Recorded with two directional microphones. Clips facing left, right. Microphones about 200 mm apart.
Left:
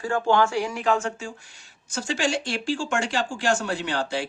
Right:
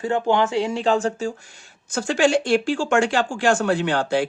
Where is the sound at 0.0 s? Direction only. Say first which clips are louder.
Right 2 dB; 20° right (ahead or behind).